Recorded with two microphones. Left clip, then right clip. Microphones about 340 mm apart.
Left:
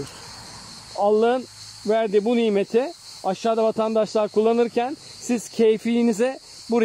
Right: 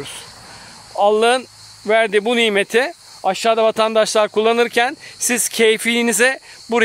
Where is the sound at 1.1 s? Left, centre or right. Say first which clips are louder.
Right 5 dB; right.